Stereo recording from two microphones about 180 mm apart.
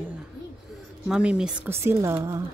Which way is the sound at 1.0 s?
5° right (ahead or behind).